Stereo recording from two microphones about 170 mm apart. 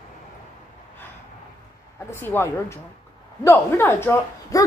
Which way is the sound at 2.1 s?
15° left (ahead or behind).